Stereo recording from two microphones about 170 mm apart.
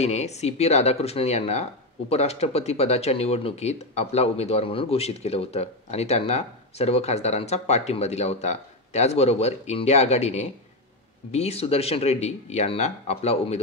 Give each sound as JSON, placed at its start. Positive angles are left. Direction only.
{"t": 0.0, "sound": "speech", "side_deg": 40}